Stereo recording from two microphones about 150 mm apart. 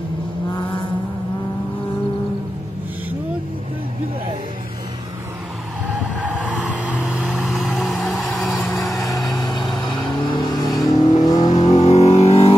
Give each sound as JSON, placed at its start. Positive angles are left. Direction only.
{"t": 6.2, "sound": "vehicle", "side_deg": -10}
{"t": 9.3, "sound": "vehicle", "side_deg": 25}
{"t": 10.7, "sound": "vehicle", "side_deg": 0}
{"t": 11.0, "sound": "vehicle", "side_deg": 25}
{"t": 11.7, "sound": "a sound", "side_deg": 45}